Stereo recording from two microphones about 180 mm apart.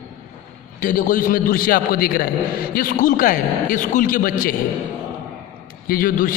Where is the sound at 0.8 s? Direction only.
50° left (ahead or behind).